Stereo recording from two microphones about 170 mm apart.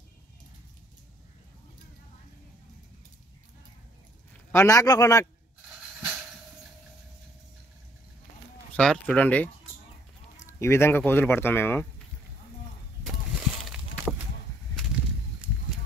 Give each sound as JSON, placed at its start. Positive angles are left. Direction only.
{"t": 4.5, "sound": "speech", "side_deg": 15}
{"t": 8.7, "sound": "speech", "side_deg": 5}
{"t": 13.0, "sound": "a sound", "side_deg": 0}